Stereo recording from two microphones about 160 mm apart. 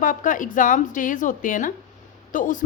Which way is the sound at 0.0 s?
55° left (ahead or behind).